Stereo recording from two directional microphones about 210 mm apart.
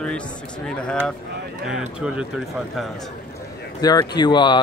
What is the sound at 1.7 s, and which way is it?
Speech, 5° right (ahead or behind).